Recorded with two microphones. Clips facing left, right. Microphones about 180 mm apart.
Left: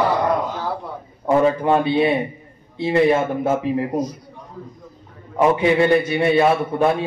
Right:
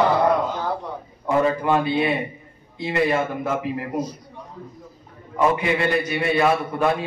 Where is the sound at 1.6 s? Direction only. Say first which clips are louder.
Left 3 dB; 30° left (ahead or behind).